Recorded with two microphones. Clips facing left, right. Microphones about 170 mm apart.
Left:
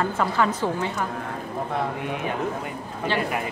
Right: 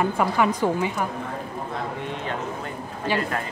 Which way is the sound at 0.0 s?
15° right (ahead or behind).